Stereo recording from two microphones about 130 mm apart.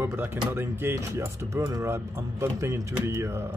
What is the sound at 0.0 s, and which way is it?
Speech, 15° right (ahead or behind).